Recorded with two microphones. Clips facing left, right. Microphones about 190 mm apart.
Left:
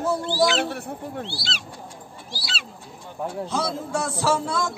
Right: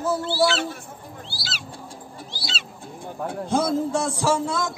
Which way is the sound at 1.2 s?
Centre (ahead or behind).